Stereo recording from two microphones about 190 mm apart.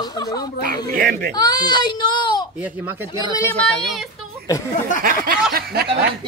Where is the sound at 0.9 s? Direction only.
45° right (ahead or behind).